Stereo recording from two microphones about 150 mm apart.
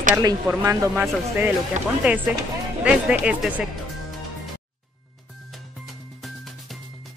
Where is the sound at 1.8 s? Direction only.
55° right (ahead or behind).